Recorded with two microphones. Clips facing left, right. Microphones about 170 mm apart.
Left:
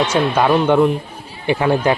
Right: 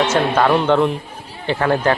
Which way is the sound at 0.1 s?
10° left (ahead or behind).